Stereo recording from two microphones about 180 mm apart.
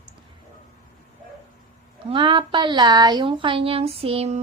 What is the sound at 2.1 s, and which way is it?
A woman's voice, 30° right (ahead or behind).